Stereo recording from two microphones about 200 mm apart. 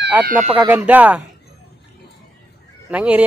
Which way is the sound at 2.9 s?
5° right (ahead or behind).